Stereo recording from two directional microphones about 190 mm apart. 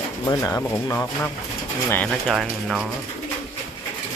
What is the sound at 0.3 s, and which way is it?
Speech, 15° left (ahead or behind).